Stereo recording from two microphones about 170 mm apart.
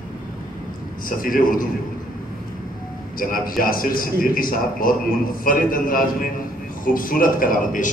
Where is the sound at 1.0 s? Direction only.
55° left (ahead or behind).